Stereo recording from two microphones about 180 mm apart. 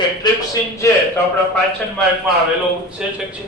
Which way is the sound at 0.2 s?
25° left (ahead or behind).